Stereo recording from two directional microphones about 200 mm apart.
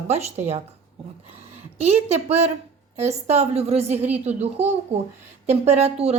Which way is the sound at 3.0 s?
35° right (ahead or behind).